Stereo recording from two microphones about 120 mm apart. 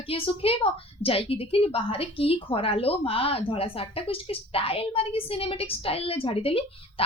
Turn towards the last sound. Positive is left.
turn(degrees=55)  # may be behind; listen again after turning